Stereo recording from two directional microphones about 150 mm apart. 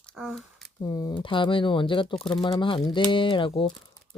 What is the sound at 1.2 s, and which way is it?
Speech, 35° left (ahead or behind).